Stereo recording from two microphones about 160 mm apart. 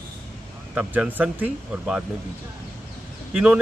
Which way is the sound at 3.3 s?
5° right (ahead or behind).